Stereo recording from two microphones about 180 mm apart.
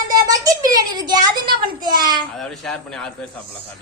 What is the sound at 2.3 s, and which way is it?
Speech, centre (ahead or behind).